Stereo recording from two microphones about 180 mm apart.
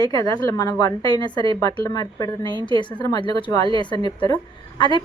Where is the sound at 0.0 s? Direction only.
20° left (ahead or behind).